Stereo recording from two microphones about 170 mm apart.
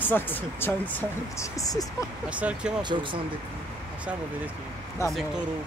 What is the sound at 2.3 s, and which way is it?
Speech, 5° right (ahead or behind).